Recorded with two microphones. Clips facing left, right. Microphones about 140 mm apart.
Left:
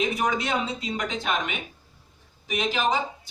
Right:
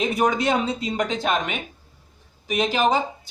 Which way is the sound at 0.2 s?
45° right (ahead or behind).